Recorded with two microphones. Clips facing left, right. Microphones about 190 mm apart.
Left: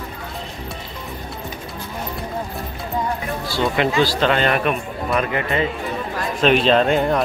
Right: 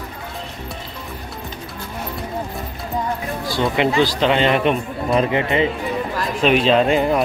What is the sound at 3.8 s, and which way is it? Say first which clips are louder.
Speech: right 1 dB; 20° right (ahead or behind).